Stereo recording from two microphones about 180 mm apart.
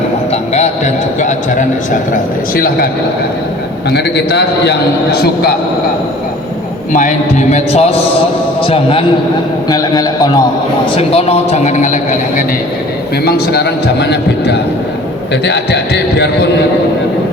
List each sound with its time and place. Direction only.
1.2 s a man's voice: 45° left (ahead or behind)
3.9 s a man's voice: 65° left (ahead or behind)
6.9 s a man's voice: 45° left (ahead or behind)
9.6 s a man's voice: 20° left (ahead or behind)
10.9 s a man's voice: 35° left (ahead or behind)
13.2 s a man's voice: 65° left (ahead or behind)